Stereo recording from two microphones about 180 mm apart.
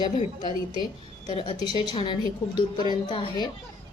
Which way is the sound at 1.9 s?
25° left (ahead or behind).